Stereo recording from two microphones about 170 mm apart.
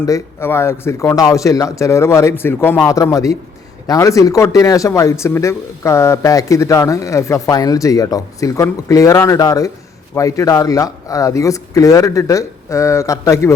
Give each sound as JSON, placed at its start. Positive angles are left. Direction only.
{"t": 0.0, "sound": "speech", "side_deg": 15}